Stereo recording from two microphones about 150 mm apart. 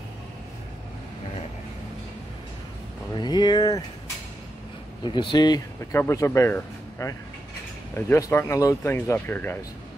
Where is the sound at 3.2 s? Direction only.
30° left (ahead or behind).